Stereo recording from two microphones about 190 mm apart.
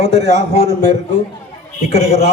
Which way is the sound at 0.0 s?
60° right (ahead or behind).